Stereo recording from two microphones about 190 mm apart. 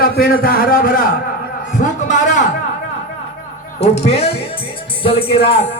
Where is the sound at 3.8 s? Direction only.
35° left (ahead or behind).